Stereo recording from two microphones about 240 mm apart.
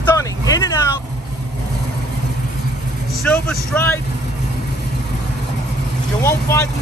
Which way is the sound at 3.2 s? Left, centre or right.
Centre.